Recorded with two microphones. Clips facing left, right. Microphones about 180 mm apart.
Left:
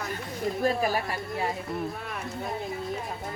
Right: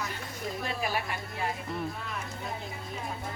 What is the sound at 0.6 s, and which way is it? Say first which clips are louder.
Speech: left 7 dB; 40° left (ahead or behind).